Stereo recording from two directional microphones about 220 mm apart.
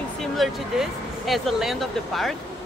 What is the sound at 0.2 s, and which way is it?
Speech, centre (ahead or behind).